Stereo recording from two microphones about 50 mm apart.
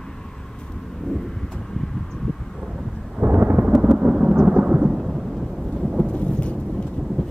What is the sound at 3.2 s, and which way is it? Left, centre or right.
Thunder, right.